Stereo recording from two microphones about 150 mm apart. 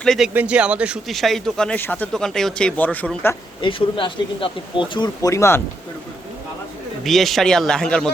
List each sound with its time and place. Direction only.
0.0 s speech: 5° left (ahead or behind)
0.3 s speech: 5° right (ahead or behind); by 3.3 s 10° left (ahead or behind)
3.6 s speech: 35° left (ahead or behind); by 5.6 s 20° left (ahead or behind)
7.0 s speech: centre (ahead or behind)